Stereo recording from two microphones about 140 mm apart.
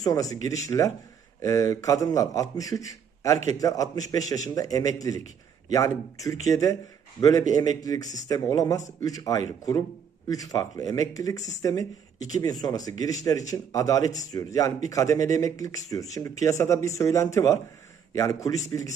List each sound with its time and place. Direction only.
0.0 s a man's voice: 25° left (ahead or behind)